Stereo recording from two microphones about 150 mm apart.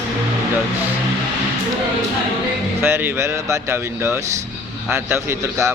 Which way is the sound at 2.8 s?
15° right (ahead or behind).